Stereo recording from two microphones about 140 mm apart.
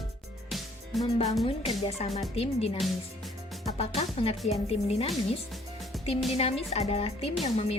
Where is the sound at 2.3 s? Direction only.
45° left (ahead or behind).